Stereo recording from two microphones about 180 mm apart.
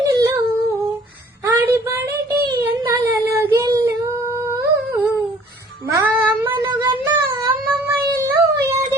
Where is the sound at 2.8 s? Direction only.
20° right (ahead or behind).